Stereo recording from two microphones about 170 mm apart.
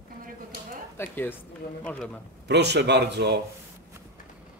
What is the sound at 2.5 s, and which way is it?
Speech, 80° right.